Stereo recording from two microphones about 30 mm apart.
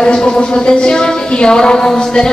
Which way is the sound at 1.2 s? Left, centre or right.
Left.